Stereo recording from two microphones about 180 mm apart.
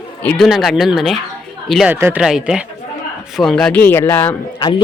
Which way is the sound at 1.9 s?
10° right (ahead or behind).